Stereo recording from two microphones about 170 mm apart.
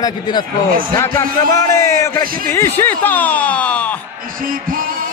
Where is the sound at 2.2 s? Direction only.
55° right (ahead or behind).